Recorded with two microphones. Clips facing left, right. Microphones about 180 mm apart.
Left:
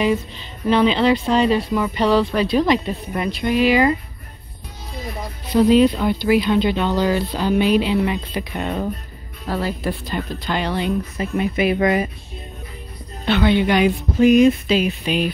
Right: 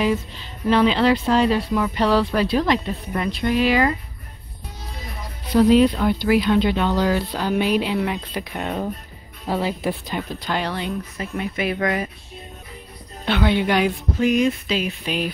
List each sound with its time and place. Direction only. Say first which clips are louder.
0.7 s speech: left 1 dB; 5° right (ahead or behind)
5.6 s speech: left 1 dB; centre (ahead or behind)
9.5 s a woman's voice: even; 20° right (ahead or behind)
11.1 s speech: left 5 dB; 15° left (ahead or behind)
13.2 s a woman's voice: left 3 dB; 10° right (ahead or behind)
14.4 s speech: left 6 dB; 20° left (ahead or behind)
15.0 s speech: left 4 dB; 5° right (ahead or behind)